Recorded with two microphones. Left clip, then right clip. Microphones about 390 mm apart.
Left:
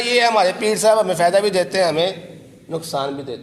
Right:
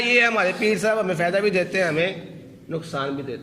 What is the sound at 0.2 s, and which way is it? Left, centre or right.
A man's voice, centre.